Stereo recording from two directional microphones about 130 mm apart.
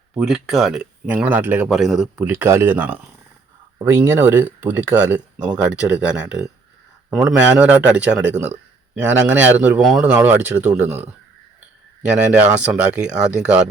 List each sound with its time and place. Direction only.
0.2 s speech: 5° right (ahead or behind)
12.3 s speech: 5° right (ahead or behind)